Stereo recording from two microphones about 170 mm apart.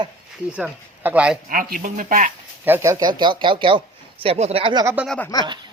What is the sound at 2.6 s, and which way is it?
A man's voice, 15° right (ahead or behind).